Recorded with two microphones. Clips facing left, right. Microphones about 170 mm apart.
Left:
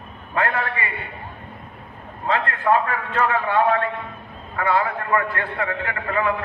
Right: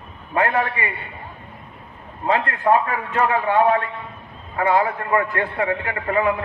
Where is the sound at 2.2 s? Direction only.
20° right (ahead or behind).